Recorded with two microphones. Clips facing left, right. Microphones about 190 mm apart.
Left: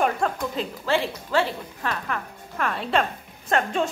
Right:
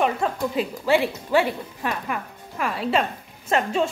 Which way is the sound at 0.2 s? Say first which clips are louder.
Right 2 dB; 5° right (ahead or behind).